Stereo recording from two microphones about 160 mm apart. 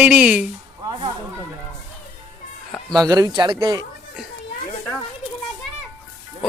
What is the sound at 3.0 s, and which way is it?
Speech, 25° right (ahead or behind).